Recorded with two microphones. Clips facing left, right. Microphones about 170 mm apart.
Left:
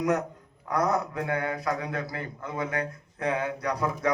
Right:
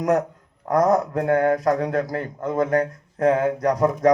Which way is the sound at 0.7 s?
45° right (ahead or behind).